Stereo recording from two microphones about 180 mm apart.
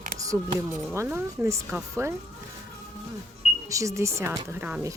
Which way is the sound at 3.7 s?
15° right (ahead or behind).